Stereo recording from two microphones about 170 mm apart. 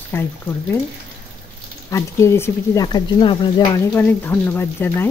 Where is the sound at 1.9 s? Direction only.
15° left (ahead or behind).